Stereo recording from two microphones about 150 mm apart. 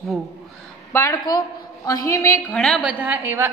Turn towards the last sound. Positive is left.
turn(degrees=-15)  # may be behind; listen again after turning